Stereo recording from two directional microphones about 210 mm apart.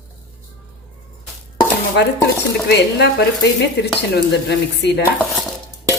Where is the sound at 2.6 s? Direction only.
55° left (ahead or behind).